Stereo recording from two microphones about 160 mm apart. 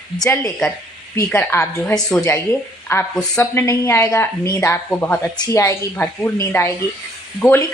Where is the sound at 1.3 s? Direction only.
15° left (ahead or behind).